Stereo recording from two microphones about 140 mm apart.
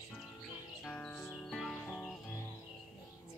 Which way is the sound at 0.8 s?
5° left (ahead or behind).